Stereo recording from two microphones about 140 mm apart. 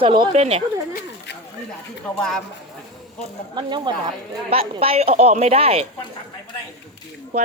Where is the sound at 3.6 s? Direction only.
35° right (ahead or behind).